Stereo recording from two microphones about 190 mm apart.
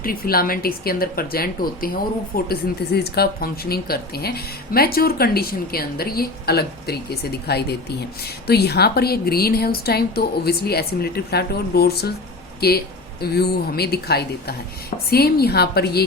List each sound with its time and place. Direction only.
0.0 s a woman's voice: 50° left (ahead or behind)